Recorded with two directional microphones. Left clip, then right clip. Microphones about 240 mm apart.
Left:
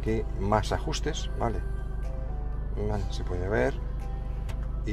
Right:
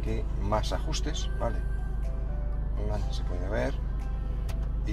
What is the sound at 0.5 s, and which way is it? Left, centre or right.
Speech, left.